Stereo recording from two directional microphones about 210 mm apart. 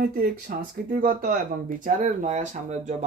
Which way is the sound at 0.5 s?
45° right (ahead or behind).